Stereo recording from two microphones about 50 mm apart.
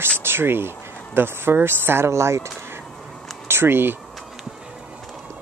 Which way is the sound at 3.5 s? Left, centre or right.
Right.